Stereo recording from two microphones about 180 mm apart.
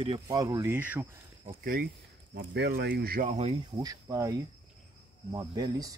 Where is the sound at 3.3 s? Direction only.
40° right (ahead or behind).